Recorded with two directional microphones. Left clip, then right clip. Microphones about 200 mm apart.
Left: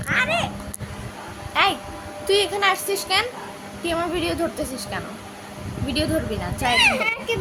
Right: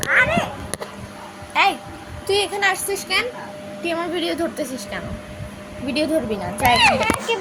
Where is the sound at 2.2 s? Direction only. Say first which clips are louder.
Even; 10° left (ahead or behind).